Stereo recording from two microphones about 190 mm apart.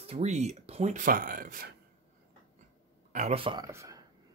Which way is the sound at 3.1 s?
35° right (ahead or behind).